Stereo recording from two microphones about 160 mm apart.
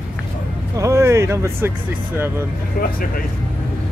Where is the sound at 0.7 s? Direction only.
20° right (ahead or behind).